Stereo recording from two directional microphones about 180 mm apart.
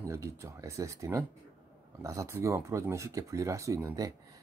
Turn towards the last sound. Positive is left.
turn(degrees=-20)  # may be behind; listen again after turning